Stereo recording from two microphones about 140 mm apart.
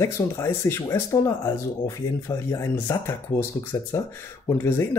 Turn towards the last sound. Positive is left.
turn(degrees=20)  # may be behind; listen again after turning